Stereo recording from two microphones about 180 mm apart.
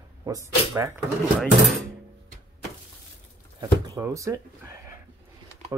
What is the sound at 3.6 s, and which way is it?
Speech, 15° right (ahead or behind).